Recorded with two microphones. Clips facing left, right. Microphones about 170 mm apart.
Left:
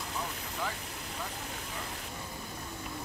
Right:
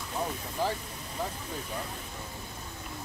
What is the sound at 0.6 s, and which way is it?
Speech, 30° right (ahead or behind).